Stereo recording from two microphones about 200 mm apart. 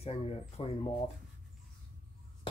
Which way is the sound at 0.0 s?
30° left (ahead or behind).